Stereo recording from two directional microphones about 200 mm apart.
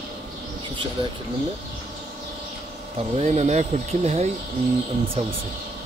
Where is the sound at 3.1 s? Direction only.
35° right (ahead or behind).